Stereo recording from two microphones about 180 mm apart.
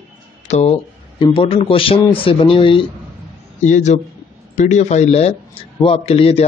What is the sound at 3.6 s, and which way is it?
A man's voice, 40° left (ahead or behind).